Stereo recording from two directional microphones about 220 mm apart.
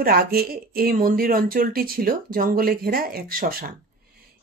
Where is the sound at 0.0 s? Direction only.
45° right (ahead or behind).